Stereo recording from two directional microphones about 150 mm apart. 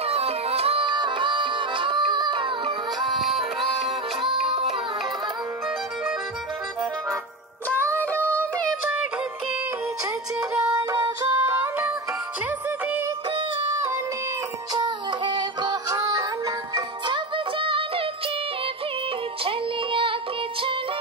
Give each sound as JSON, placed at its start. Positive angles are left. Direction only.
{"t": 0.0, "sound": "music", "side_deg": -40}
{"t": 3.1, "sound": "music", "side_deg": 0}
{"t": 4.5, "sound": "music", "side_deg": -40}
{"t": 7.7, "sound": "music", "side_deg": 10}
{"t": 10.7, "sound": "music", "side_deg": -25}
{"t": 11.3, "sound": "music", "side_deg": -15}
{"t": 14.7, "sound": "music", "side_deg": -30}
{"t": 16.7, "sound": "music", "side_deg": -35}
{"t": 19.4, "sound": "music", "side_deg": -35}